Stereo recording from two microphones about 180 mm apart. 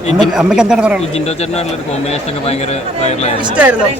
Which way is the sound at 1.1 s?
35° left (ahead or behind).